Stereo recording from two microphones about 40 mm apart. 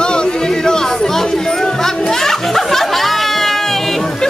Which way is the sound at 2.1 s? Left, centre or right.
Centre.